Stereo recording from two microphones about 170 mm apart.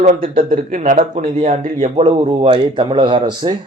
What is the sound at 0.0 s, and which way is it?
Speech, 45° right (ahead or behind).